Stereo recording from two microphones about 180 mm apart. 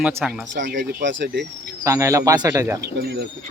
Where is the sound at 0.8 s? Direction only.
65° right (ahead or behind).